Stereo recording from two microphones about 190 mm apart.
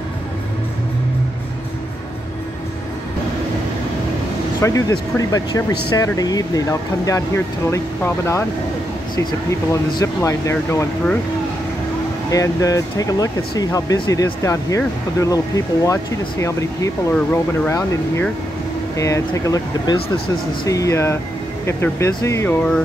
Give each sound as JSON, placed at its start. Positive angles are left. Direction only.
{"t": 4.6, "sound": "speech", "side_deg": 15}
{"t": 12.3, "sound": "speech", "side_deg": 15}